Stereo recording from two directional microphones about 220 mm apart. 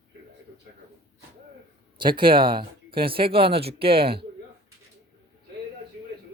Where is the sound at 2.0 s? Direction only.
20° right (ahead or behind).